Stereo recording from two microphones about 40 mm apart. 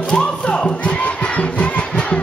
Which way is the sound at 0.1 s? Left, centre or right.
Left.